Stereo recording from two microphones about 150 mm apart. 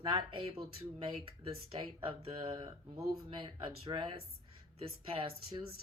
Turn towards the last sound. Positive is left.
turn(degrees=-40)  # may be behind; listen again after turning